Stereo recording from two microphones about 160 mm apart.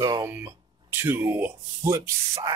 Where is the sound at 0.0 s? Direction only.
20° right (ahead or behind).